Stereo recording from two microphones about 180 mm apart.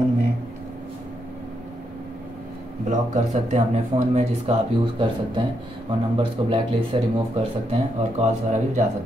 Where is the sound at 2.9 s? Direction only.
45° right (ahead or behind).